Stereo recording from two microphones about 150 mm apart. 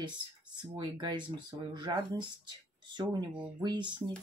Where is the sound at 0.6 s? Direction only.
30° right (ahead or behind).